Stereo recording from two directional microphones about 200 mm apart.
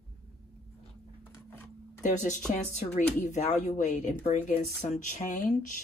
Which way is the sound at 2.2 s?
40° left (ahead or behind).